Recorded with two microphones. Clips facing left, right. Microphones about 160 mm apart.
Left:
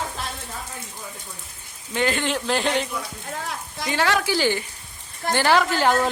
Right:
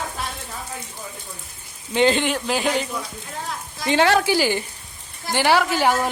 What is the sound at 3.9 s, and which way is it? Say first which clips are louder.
Speech: right 5 dB; 30° right (ahead or behind).